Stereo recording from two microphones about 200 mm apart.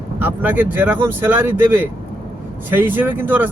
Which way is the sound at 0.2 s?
10° right (ahead or behind).